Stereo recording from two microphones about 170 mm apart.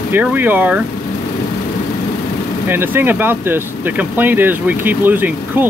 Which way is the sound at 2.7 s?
15° right (ahead or behind).